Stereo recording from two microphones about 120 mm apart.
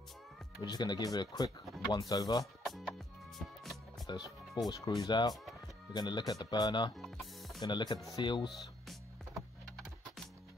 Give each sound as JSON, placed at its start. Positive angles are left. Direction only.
{"t": 0.6, "sound": "speech", "side_deg": 40}
{"t": 2.6, "sound": "music", "side_deg": 0}
{"t": 4.1, "sound": "speech", "side_deg": 40}
{"t": 5.3, "sound": "speech", "side_deg": 0}
{"t": 5.9, "sound": "speech", "side_deg": 40}
{"t": 7.0, "sound": "music", "side_deg": 0}
{"t": 7.6, "sound": "speech", "side_deg": 35}